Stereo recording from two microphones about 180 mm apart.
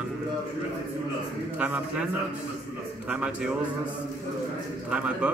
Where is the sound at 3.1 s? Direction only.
5° right (ahead or behind).